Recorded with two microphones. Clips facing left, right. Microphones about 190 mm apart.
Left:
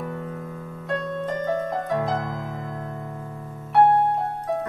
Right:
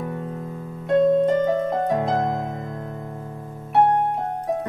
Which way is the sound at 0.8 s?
25° right (ahead or behind).